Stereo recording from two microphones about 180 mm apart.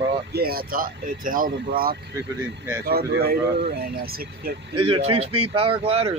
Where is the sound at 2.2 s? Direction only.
15° right (ahead or behind).